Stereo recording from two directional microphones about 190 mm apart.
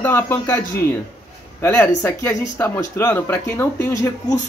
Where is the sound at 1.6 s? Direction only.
15° left (ahead or behind).